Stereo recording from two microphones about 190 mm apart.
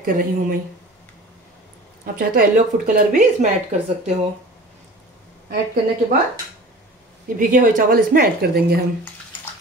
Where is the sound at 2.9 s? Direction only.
45° right (ahead or behind).